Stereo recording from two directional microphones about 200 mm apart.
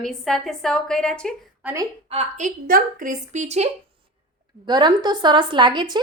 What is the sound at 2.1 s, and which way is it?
A woman's voice, 35° right (ahead or behind).